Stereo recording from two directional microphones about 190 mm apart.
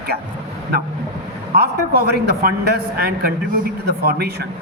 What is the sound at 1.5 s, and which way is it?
A man's voice, 55° right (ahead or behind).